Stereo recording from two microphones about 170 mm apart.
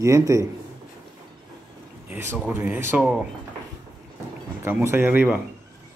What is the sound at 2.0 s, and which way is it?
Speech, 10° right (ahead or behind).